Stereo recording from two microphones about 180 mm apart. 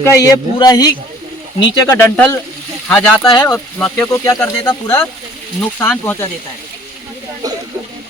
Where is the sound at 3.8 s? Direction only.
5° left (ahead or behind).